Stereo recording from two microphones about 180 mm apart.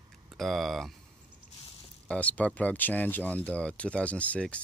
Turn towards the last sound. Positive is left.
turn(degrees=5)  # may be behind; listen again after turning